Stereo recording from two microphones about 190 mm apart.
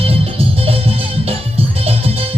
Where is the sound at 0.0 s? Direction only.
30° right (ahead or behind).